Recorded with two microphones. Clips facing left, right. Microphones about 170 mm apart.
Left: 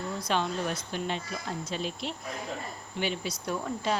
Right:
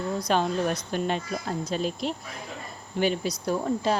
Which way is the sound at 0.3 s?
40° right (ahead or behind).